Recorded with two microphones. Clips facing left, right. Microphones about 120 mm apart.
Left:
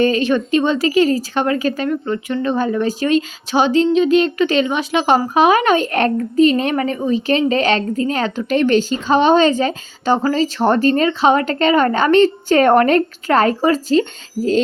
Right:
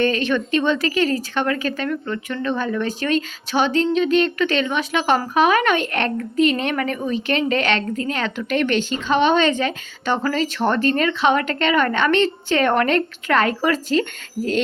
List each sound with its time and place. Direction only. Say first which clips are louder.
0.0 s speech: left 4 dB; 35° left (ahead or behind)